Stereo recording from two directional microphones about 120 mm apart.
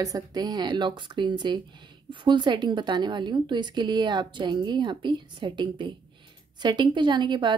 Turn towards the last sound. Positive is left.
turn(degrees=-40)  # may be behind; listen again after turning